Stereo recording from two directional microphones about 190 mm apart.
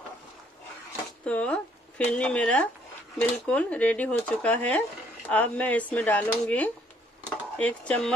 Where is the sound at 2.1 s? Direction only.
5° left (ahead or behind).